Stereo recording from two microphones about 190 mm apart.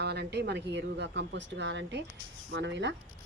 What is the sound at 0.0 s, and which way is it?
Speech, 60° right (ahead or behind).